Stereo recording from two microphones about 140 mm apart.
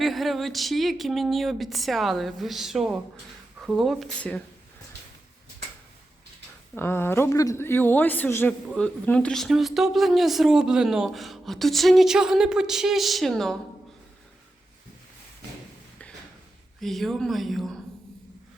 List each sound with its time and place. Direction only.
0.0 s speech: centre (ahead or behind)
6.7 s a woman's voice: 15° left (ahead or behind)
16.8 s speech: centre (ahead or behind)